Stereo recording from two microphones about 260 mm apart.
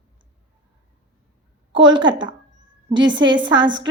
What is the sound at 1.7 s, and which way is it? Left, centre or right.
Speech, right.